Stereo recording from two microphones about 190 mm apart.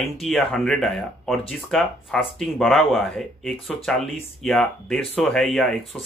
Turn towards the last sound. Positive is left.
turn(degrees=5)  # may be behind; listen again after turning